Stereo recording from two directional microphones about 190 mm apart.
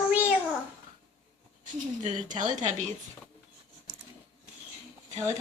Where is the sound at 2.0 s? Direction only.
40° right (ahead or behind).